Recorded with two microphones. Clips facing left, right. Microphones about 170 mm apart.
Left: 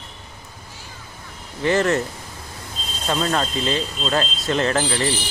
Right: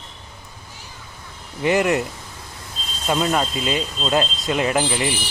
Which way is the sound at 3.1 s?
10° right (ahead or behind).